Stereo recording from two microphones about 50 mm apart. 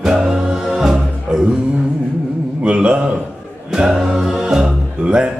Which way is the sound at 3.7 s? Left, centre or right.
Centre.